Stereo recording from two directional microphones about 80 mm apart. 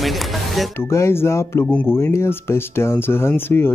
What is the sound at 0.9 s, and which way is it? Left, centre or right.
Speech, left.